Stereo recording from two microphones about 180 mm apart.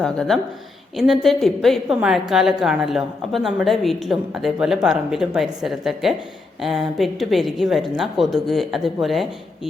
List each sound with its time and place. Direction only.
0.0 s a woman's voice: 5° left (ahead or behind)